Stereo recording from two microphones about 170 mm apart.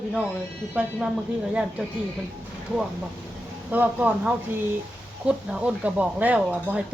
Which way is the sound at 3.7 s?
10° right (ahead or behind).